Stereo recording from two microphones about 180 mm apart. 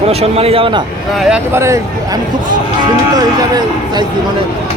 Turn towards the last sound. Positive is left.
turn(degrees=-25)  # may be behind; listen again after turning